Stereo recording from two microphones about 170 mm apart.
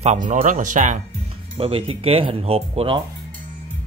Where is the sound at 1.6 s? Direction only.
30° right (ahead or behind).